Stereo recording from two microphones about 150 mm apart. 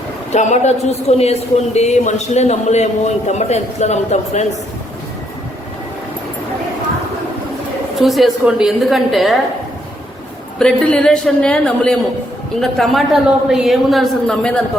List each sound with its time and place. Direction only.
0.3 s a man's voice: 50° left (ahead or behind)
7.9 s a woman's voice: centre (ahead or behind)
10.6 s a woman's voice: 5° left (ahead or behind)